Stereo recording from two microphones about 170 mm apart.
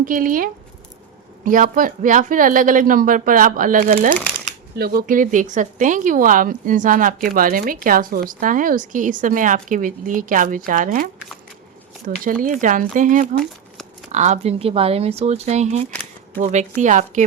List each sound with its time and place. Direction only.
0.0 s speech: 55° right (ahead or behind)
4.7 s speech: 65° right (ahead or behind); by 17.2 s 45° right (ahead or behind)